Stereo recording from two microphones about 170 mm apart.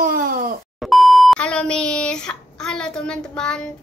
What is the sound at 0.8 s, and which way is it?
A child's voice, centre (ahead or behind).